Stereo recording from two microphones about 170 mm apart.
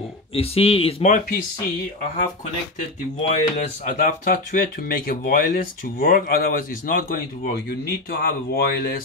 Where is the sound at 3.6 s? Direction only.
50° left (ahead or behind); by 9.0 s 70° left (ahead or behind).